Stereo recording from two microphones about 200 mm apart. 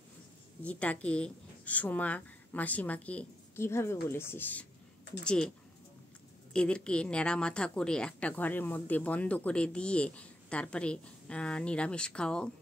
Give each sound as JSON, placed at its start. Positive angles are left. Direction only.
{"t": 0.7, "sound": "speech", "side_deg": 5}
{"t": 6.5, "sound": "speech", "side_deg": 5}